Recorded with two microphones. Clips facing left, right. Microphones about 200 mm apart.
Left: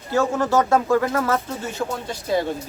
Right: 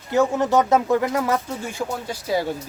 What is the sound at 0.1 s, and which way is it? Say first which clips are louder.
Speech: right 1 dB; 20° right (ahead or behind).